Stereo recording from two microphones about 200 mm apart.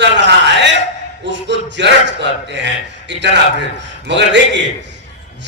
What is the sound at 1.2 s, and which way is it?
A man's voice, 60° right (ahead or behind).